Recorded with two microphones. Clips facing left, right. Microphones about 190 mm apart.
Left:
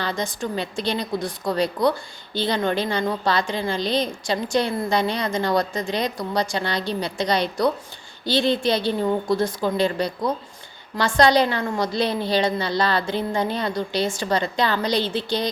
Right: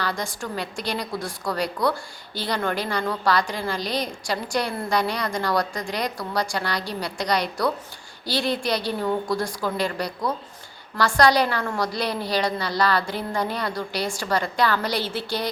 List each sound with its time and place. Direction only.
0.0 s a woman's voice: 20° left (ahead or behind)